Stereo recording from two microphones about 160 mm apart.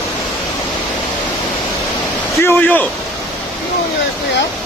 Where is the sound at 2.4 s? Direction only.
10° left (ahead or behind).